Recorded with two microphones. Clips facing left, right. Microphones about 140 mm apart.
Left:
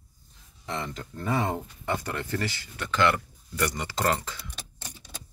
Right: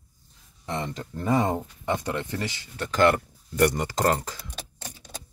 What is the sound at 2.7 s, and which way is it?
Speech, 40° right (ahead or behind).